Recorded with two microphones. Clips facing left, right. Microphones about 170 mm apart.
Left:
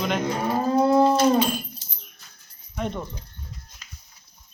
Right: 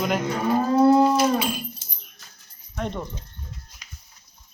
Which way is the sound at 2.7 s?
Centre (ahead or behind).